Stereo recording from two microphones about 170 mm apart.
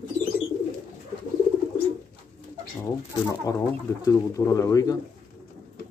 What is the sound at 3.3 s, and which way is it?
Speech, 20° left (ahead or behind).